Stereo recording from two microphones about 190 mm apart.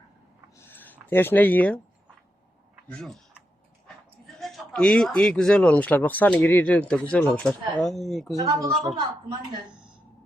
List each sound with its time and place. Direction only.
0.6 s a sound: 10° left (ahead or behind)
1.1 s speech: 10° left (ahead or behind)
2.9 s speech: centre (ahead or behind)
4.4 s speech: centre (ahead or behind)
8.4 s a woman's voice: 15° right (ahead or behind)